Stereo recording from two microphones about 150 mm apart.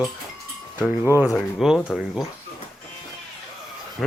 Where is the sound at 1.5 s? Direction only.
Centre (ahead or behind).